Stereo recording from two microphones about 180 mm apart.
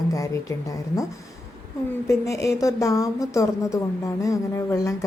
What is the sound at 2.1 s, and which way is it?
A woman's voice, 15° left (ahead or behind).